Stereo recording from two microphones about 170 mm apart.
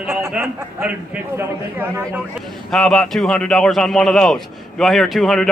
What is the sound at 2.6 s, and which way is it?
A man's voice, centre (ahead or behind).